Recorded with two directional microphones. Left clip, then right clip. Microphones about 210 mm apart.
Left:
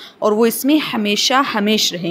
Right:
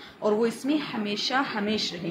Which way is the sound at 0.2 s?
50° left (ahead or behind).